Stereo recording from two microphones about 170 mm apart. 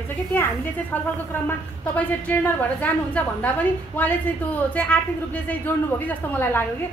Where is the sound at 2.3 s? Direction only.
10° left (ahead or behind).